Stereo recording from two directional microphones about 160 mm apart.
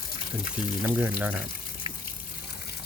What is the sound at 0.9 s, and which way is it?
Speech, 10° right (ahead or behind).